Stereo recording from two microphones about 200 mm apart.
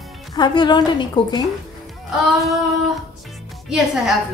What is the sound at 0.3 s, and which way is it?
A woman's voice, 20° left (ahead or behind).